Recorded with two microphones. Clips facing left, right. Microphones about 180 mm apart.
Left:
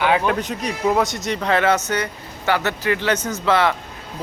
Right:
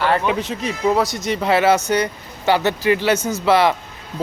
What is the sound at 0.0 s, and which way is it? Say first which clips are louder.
A man's voice: even; centre (ahead or behind).